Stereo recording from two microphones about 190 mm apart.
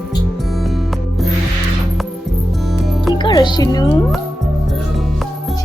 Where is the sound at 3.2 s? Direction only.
25° left (ahead or behind).